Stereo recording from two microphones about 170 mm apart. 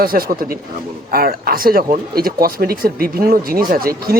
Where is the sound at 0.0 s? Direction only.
60° right (ahead or behind).